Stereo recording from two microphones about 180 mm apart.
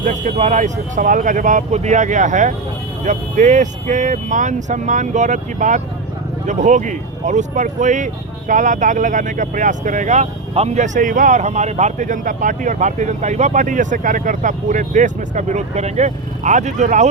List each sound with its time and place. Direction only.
0.0 s speech: 45° right (ahead or behind)